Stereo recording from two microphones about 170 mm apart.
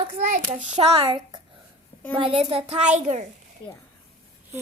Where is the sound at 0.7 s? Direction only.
35° right (ahead or behind).